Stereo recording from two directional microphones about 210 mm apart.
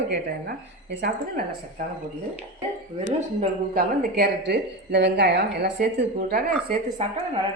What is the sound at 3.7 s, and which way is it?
A woman's voice, 45° right (ahead or behind).